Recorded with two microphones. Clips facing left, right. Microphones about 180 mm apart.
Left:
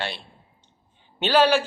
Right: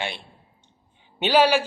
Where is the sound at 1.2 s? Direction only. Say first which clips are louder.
Even; 10° right (ahead or behind).